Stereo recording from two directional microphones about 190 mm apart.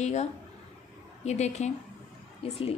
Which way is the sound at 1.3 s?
35° left (ahead or behind).